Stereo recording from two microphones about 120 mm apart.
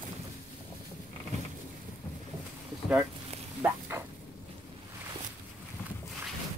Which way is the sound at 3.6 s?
20° right (ahead or behind).